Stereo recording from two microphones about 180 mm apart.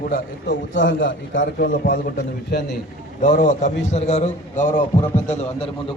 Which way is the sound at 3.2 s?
45° left (ahead or behind).